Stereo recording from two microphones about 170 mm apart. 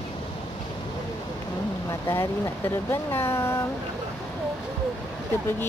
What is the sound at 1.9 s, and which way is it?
Speech, 15° left (ahead or behind).